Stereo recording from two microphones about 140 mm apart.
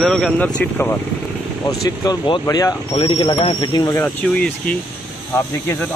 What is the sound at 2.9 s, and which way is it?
Speech, 40° left (ahead or behind).